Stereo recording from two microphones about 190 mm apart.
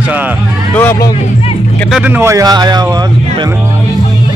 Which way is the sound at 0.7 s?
10° left (ahead or behind).